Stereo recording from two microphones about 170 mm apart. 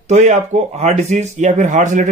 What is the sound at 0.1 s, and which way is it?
A man's voice, 40° right (ahead or behind).